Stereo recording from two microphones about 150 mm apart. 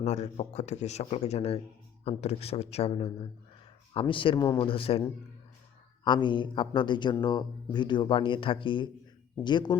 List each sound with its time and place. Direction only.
0.0 s speech: 50° left (ahead or behind)
6.1 s speech: 30° left (ahead or behind)